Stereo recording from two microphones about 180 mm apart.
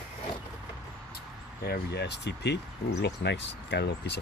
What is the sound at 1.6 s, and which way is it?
Speech, 65° left (ahead or behind).